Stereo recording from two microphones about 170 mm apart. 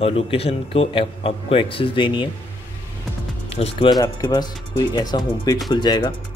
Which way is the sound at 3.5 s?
35° left (ahead or behind).